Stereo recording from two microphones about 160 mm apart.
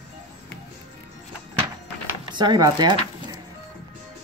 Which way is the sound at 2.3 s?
30° right (ahead or behind).